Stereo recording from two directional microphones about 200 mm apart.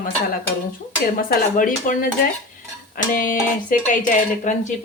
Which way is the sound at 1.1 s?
40° left (ahead or behind).